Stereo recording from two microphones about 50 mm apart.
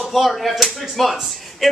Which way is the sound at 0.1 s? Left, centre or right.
Centre.